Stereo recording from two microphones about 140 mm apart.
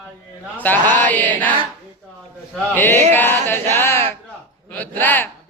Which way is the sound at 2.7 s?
15° left (ahead or behind).